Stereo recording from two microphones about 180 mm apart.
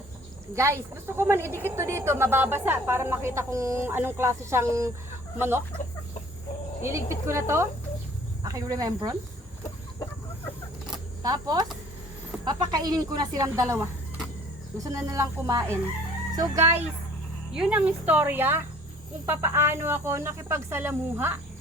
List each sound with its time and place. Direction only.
0.5 s a woman's voice: 15° right (ahead or behind)
6.8 s a woman's voice: 15° right (ahead or behind)
11.2 s a woman's voice: 20° right (ahead or behind)
17.5 s a woman's voice: 5° right (ahead or behind)